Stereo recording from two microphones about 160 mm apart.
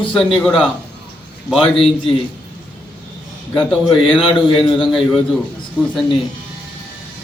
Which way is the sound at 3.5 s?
5° left (ahead or behind).